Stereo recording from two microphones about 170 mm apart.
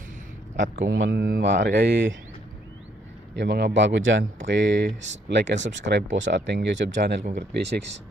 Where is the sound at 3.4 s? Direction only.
80° right.